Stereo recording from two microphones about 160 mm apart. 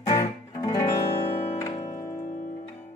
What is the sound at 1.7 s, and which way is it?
Music, 40° left (ahead or behind).